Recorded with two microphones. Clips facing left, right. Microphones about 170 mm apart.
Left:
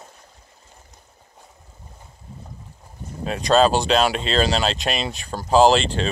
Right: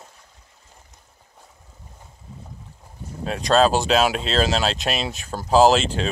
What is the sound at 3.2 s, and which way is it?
Speech, centre (ahead or behind).